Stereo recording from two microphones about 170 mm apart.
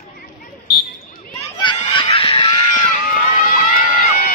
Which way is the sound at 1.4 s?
25° left (ahead or behind).